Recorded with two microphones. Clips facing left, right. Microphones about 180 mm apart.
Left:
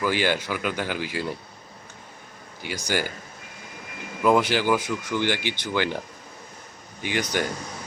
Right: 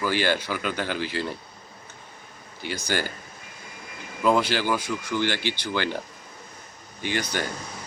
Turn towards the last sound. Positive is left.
turn(degrees=15)  # may be behind; listen again after turning